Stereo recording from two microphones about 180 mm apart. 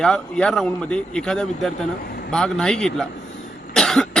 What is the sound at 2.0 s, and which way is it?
Vehicle, 60° left (ahead or behind).